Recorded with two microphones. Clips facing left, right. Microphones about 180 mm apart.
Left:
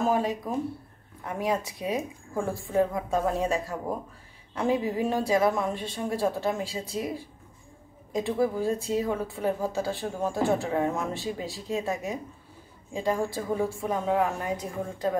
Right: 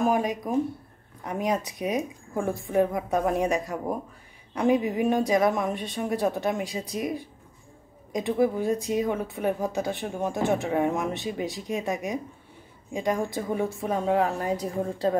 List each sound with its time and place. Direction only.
0.0 s a woman's voice: 15° right (ahead or behind); by 15.1 s 35° right (ahead or behind)